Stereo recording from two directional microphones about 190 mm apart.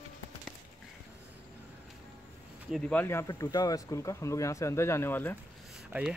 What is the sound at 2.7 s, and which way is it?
Speech, 5° left (ahead or behind).